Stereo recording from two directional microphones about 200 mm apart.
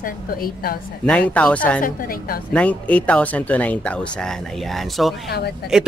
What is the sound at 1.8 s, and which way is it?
Speech, 45° left (ahead or behind).